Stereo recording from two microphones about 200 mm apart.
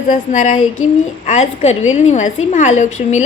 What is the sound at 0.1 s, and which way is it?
A woman's voice, 40° left (ahead or behind).